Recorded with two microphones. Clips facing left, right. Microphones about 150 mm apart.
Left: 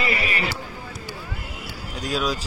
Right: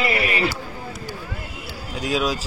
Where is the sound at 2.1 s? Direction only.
10° right (ahead or behind).